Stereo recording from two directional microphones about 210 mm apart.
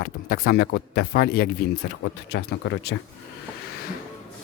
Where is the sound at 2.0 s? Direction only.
55° left (ahead or behind).